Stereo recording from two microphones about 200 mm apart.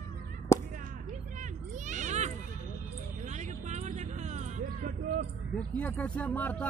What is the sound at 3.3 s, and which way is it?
Vehicle, 35° right (ahead or behind).